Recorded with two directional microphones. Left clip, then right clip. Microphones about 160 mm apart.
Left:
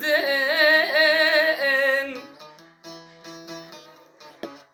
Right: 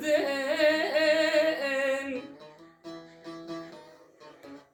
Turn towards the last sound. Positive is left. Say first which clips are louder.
# left 1 dB
turn(degrees=-5)  # may be behind; listen again after turning